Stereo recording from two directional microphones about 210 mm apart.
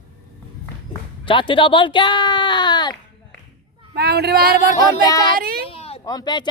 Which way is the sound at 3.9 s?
50° right (ahead or behind).